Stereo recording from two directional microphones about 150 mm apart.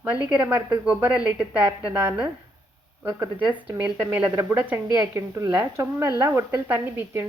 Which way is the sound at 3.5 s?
15° right (ahead or behind).